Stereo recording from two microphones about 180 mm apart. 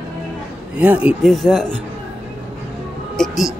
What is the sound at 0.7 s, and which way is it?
Speech, 5° right (ahead or behind).